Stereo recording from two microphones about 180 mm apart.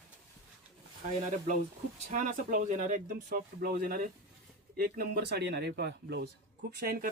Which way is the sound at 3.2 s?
55° right (ahead or behind).